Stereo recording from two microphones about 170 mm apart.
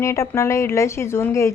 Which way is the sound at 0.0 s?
15° left (ahead or behind).